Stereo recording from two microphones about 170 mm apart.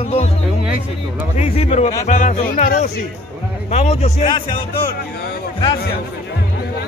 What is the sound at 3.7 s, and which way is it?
Speech, 40° left (ahead or behind).